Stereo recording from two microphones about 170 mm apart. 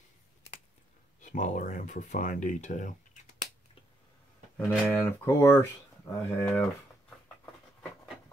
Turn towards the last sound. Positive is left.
turn(degrees=5)  # may be behind; listen again after turning